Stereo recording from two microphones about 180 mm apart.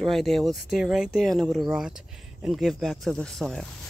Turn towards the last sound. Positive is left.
turn(degrees=0)  # may be behind; listen again after turning